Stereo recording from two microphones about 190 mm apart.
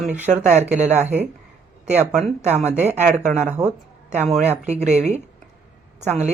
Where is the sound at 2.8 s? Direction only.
35° right (ahead or behind).